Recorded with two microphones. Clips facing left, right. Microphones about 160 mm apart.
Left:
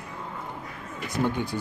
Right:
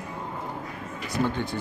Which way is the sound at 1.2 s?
15° left (ahead or behind).